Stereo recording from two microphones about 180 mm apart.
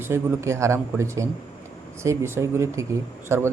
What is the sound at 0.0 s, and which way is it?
Speech, 15° right (ahead or behind).